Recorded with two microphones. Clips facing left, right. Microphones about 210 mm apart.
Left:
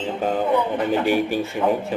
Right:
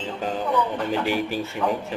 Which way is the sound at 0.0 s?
55° left (ahead or behind).